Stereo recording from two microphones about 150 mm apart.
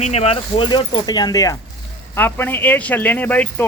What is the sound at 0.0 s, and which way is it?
Speech, 45° left (ahead or behind).